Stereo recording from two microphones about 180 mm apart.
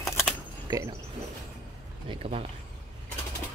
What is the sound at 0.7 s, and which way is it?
Speech, 20° right (ahead or behind).